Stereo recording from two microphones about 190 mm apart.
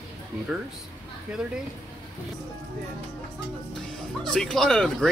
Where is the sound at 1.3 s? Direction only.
5° right (ahead or behind).